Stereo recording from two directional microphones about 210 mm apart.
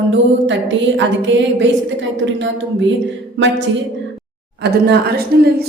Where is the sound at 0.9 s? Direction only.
60° right (ahead or behind).